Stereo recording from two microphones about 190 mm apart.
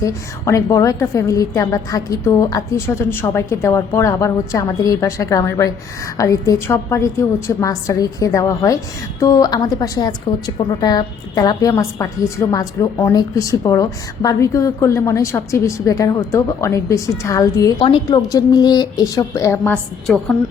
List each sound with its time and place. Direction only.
0.0 s a woman's voice: 15° left (ahead or behind)